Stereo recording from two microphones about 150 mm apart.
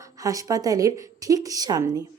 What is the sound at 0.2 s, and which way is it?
A woman's voice, 20° right (ahead or behind).